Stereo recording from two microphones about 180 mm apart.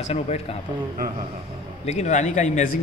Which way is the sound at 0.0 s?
35° left (ahead or behind).